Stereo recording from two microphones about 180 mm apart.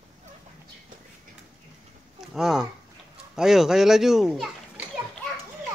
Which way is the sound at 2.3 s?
5° right (ahead or behind).